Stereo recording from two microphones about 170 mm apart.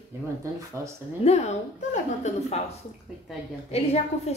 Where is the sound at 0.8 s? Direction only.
15° right (ahead or behind).